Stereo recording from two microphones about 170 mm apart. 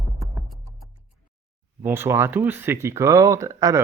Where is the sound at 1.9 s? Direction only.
15° right (ahead or behind).